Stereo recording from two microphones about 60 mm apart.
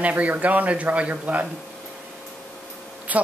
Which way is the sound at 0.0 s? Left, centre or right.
Right.